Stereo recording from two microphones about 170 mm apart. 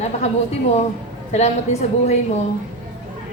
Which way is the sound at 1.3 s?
40° left (ahead or behind).